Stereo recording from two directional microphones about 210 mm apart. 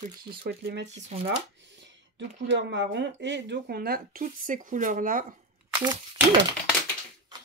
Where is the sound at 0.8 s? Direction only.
30° right (ahead or behind).